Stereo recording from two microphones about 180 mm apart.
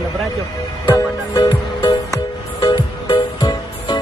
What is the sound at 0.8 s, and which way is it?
Speech, 15° left (ahead or behind).